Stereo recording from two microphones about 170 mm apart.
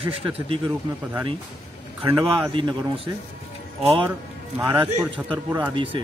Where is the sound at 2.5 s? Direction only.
30° right (ahead or behind).